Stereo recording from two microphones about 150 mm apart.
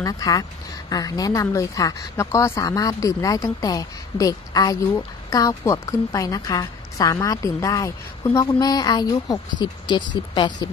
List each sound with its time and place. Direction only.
0.0 s speech: 25° left (ahead or behind)